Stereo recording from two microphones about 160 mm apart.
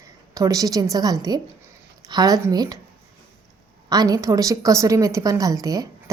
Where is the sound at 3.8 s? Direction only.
25° right (ahead or behind).